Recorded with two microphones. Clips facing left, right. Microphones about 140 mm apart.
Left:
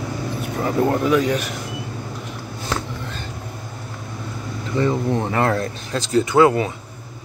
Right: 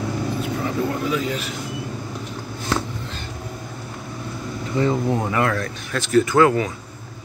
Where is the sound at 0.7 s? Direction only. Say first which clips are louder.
Left 8 dB; 50° left (ahead or behind).